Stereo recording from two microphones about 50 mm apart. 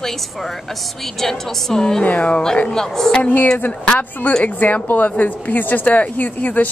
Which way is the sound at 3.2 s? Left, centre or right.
Left.